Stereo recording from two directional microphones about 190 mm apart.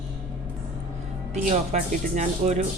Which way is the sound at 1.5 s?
40° right (ahead or behind).